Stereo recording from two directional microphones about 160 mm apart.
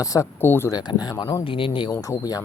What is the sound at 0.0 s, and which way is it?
Speech, 20° left (ahead or behind).